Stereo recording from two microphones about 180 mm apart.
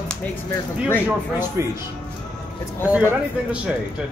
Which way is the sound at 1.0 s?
15° right (ahead or behind).